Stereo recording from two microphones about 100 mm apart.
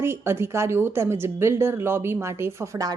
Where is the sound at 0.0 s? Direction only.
25° right (ahead or behind).